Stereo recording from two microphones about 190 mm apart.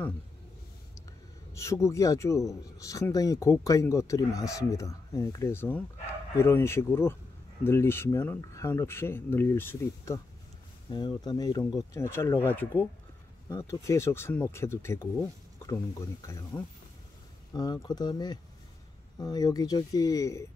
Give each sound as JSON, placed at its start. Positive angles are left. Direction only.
{"t": 1.5, "sound": "speech", "side_deg": 15}